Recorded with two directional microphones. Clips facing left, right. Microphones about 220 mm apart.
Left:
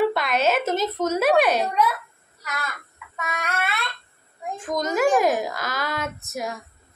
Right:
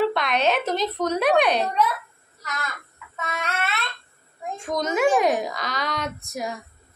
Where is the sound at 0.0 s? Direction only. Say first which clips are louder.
Left 1 dB; 5° left (ahead or behind).